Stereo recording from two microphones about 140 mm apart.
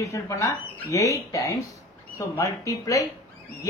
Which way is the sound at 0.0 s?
25° left (ahead or behind).